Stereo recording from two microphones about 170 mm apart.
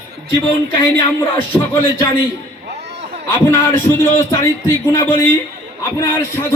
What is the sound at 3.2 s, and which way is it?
A man's voice, 15° left (ahead or behind).